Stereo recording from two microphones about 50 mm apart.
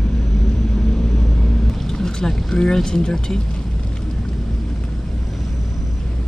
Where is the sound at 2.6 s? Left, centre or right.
Centre.